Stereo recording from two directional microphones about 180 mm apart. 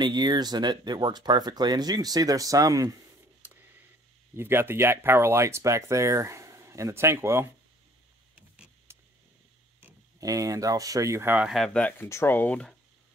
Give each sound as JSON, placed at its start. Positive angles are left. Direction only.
{"t": 0.0, "sound": "speech", "side_deg": -25}
{"t": 3.4, "sound": "tick", "side_deg": -10}
{"t": 4.4, "sound": "speech", "side_deg": -10}
{"t": 8.4, "sound": "power windows", "side_deg": -10}
{"t": 9.8, "sound": "speech", "side_deg": -15}